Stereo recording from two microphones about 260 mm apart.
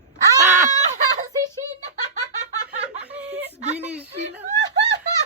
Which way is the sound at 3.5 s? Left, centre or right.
Right.